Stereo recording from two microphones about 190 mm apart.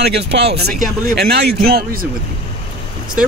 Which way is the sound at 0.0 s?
60° right (ahead or behind).